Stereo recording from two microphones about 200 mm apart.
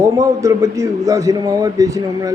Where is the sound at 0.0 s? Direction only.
15° right (ahead or behind).